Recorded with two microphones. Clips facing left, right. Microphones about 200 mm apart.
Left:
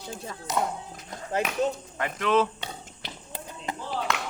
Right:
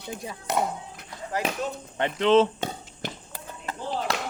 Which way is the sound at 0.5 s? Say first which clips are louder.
Right 2 dB; 60° right (ahead or behind).